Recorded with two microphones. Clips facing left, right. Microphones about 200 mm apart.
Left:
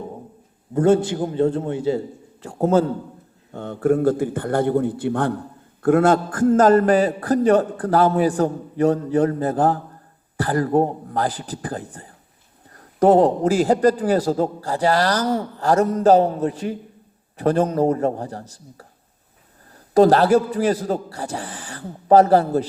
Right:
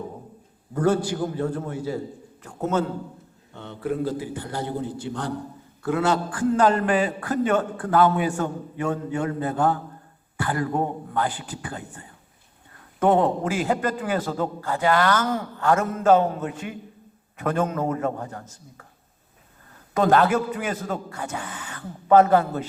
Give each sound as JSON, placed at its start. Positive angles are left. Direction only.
{"t": 0.7, "sound": "a man's voice", "side_deg": 25}
{"t": 3.5, "sound": "a man's voice", "side_deg": 45}
{"t": 19.9, "sound": "a man's voice", "side_deg": 35}